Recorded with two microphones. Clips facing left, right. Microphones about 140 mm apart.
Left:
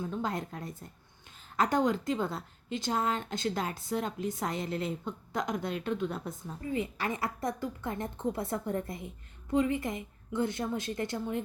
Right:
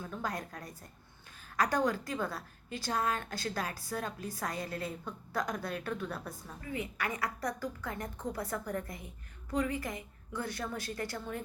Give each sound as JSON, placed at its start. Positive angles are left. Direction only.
{"t": 0.0, "sound": "a woman's voice", "side_deg": 25}